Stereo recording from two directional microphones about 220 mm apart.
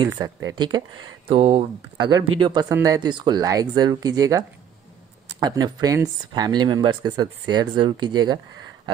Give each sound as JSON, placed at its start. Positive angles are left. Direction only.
{"t": 0.0, "sound": "speech", "side_deg": -15}